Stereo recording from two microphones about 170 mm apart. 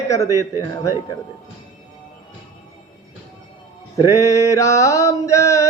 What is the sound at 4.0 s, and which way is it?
Mantra, 20° left (ahead or behind).